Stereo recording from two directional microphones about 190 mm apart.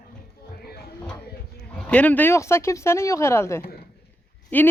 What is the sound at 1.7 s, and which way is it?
Speech, 5° left (ahead or behind).